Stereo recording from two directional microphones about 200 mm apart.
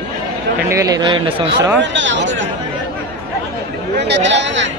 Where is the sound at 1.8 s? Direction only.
65° right (ahead or behind).